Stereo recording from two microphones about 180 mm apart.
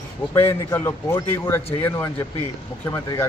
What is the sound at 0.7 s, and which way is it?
A man's voice, 15° left (ahead or behind).